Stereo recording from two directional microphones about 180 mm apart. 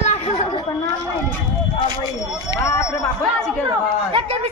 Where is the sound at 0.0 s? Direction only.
40° left (ahead or behind).